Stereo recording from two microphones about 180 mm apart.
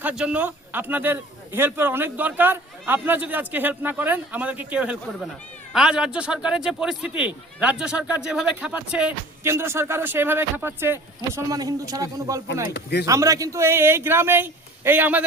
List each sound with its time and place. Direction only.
0.0 s speech: 5° right (ahead or behind)
12.7 s speech: 70° left (ahead or behind)
13.1 s speech: 20° right (ahead or behind)